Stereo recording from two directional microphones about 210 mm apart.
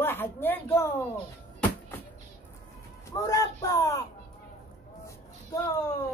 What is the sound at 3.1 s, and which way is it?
Speech, 15° left (ahead or behind).